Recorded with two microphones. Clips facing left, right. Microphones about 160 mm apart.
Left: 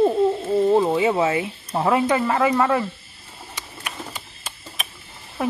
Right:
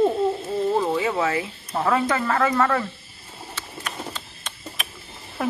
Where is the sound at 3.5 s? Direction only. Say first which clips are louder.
Right 1 dB; 10° left (ahead or behind).